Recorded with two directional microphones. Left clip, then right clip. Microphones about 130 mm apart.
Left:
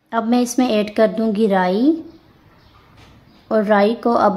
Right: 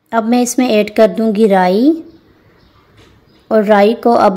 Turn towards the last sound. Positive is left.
turn(degrees=-30)  # may be behind; listen again after turning